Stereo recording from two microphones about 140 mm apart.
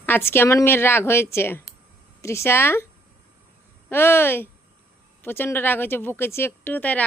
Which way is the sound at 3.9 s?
15° left (ahead or behind).